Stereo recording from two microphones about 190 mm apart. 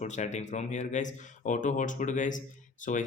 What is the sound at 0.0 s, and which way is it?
Speech, 40° left (ahead or behind).